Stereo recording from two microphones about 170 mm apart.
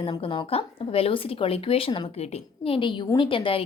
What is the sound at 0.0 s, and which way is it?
A woman's voice, 30° left (ahead or behind).